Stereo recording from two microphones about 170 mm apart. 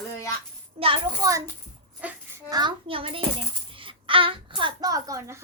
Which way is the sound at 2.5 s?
25° right (ahead or behind).